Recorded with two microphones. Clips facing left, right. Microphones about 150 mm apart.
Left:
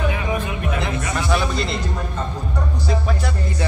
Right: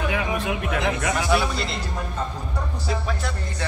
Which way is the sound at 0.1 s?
80° right.